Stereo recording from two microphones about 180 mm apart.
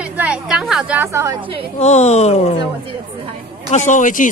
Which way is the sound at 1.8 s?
40° left (ahead or behind).